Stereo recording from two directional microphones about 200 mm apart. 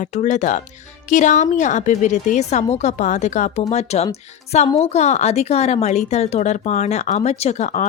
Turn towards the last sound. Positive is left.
turn(degrees=35)  # may be behind; listen again after turning